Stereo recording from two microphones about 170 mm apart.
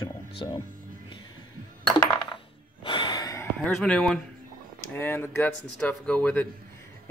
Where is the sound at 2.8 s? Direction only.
30° left (ahead or behind).